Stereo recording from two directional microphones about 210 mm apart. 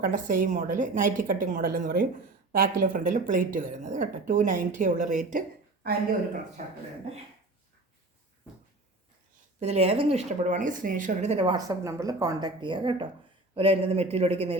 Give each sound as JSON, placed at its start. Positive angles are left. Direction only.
{"t": 0.0, "sound": "speech", "side_deg": -40}
{"t": 6.6, "sound": "speech", "side_deg": -35}
{"t": 9.6, "sound": "speech", "side_deg": -30}